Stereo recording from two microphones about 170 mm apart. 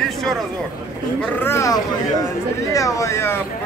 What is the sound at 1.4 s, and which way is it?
Speech, 15° left (ahead or behind).